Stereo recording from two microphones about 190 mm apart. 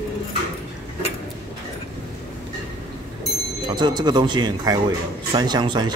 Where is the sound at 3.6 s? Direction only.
20° right (ahead or behind).